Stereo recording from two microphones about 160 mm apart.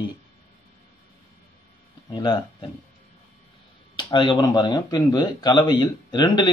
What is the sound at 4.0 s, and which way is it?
Speech, 30° left (ahead or behind).